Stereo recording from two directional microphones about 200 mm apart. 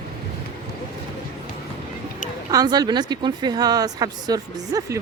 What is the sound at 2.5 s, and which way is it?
Speech, 20° right (ahead or behind).